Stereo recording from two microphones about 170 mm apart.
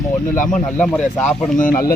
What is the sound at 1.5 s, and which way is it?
Speech, 55° left (ahead or behind).